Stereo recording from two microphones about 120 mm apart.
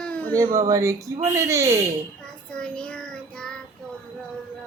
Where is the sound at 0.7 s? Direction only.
25° right (ahead or behind).